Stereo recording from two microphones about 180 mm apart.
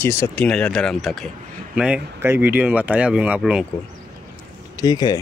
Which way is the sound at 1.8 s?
10° right (ahead or behind).